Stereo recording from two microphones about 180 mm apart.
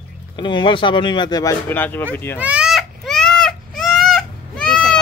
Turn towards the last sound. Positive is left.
turn(degrees=5)  # may be behind; listen again after turning